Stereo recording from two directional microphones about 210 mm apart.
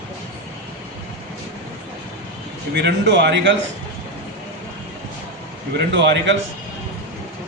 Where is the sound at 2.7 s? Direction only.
55° right (ahead or behind).